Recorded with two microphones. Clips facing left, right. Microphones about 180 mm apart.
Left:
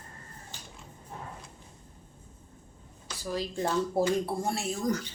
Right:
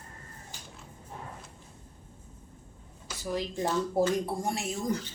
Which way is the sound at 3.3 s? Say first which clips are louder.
Even; 15° right (ahead or behind).